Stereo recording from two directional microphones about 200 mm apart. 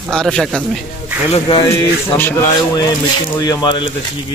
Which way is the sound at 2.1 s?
10° left (ahead or behind).